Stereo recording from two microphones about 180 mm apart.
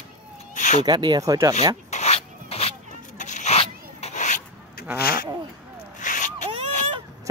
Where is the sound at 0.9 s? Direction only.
25° right (ahead or behind).